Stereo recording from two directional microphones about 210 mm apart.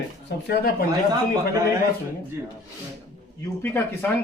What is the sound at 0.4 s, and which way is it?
Speech, 50° left (ahead or behind).